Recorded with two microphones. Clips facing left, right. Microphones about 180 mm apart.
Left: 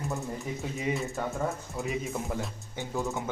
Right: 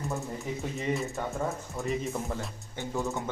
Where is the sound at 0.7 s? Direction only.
Centre (ahead or behind).